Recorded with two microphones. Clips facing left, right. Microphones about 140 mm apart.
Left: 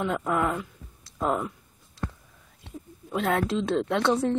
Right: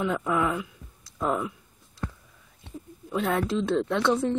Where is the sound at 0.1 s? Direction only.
5° left (ahead or behind).